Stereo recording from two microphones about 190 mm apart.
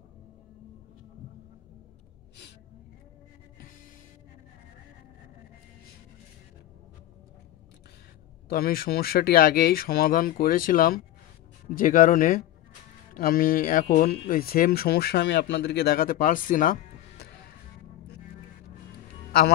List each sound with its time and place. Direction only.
8.5 s speech: 50° left (ahead or behind)